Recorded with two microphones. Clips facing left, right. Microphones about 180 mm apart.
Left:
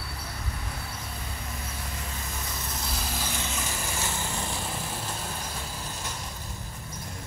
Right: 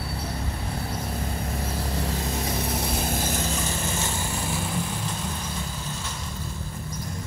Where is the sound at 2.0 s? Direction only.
75° right (ahead or behind); by 3.6 s 40° right (ahead or behind).